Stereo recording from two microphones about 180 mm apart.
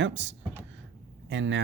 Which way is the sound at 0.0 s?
90° right.